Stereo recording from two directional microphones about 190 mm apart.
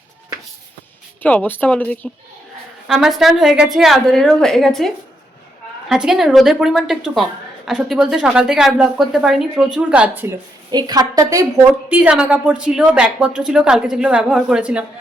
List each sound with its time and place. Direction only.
1.2 s a woman's voice: 10° left (ahead or behind)
5.9 s a woman's voice: 5° right (ahead or behind)
10.7 s a woman's voice: 20° right (ahead or behind); by 14.8 s 5° right (ahead or behind)